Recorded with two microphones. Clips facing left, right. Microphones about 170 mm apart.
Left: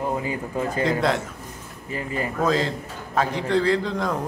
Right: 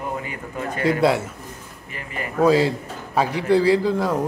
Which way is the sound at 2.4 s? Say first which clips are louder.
Right 7 dB; 10° right (ahead or behind).